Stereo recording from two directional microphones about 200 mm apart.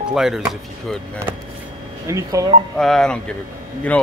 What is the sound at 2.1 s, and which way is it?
Speech, 15° right (ahead or behind).